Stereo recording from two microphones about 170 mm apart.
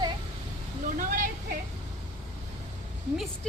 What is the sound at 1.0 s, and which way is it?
Speech, 50° right (ahead or behind).